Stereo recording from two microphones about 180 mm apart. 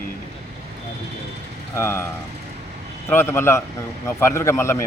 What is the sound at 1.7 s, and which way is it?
Speech, 15° left (ahead or behind).